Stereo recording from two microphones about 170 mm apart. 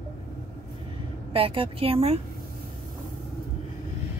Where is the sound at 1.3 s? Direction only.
30° right (ahead or behind).